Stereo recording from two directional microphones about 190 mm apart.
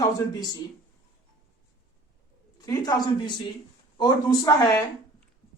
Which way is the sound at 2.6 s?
20° left (ahead or behind).